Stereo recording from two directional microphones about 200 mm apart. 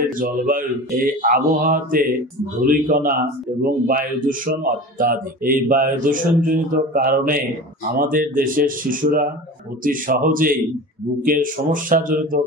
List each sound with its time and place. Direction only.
0.2 s speech: 45° right (ahead or behind)